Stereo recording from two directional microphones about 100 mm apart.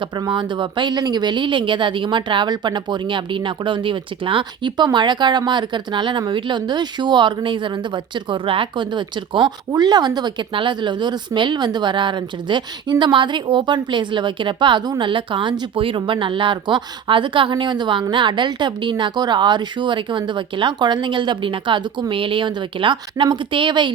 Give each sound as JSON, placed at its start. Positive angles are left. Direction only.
{"t": 0.3, "sound": "speech", "side_deg": -55}